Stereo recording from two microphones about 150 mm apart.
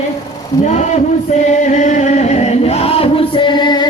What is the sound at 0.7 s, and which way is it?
Music, 50° left (ahead or behind).